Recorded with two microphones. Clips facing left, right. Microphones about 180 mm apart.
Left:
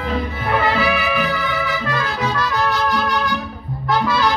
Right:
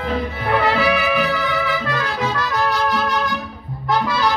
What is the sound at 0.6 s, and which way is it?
Trumpet, 75° right (ahead or behind).